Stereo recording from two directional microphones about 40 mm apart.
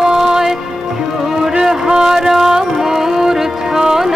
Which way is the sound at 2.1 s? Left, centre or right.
Centre.